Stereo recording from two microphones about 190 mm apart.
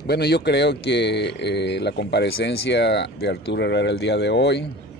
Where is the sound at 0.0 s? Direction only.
60° left (ahead or behind).